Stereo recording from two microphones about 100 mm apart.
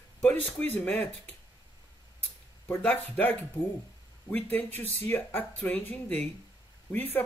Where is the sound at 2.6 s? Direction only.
20° left (ahead or behind).